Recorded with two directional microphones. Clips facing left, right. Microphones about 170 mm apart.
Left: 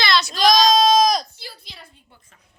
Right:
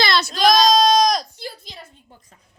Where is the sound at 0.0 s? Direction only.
50° right (ahead or behind).